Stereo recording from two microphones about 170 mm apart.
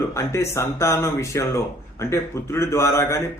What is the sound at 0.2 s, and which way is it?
A man's voice, 15° left (ahead or behind).